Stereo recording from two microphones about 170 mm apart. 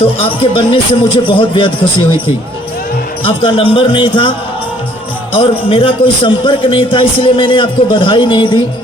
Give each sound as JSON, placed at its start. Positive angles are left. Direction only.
{"t": 0.0, "sound": "a man's voice", "side_deg": 30}
{"t": 3.2, "sound": "a man's voice", "side_deg": 30}